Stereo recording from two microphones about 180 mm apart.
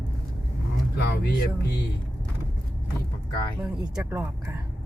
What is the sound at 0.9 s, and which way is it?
Speech, 70° left (ahead or behind).